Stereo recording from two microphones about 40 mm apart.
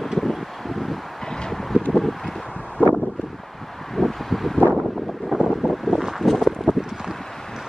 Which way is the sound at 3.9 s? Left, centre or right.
Centre.